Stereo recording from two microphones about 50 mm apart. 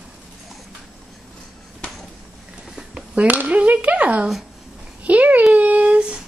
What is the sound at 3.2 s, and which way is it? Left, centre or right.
Speech, right.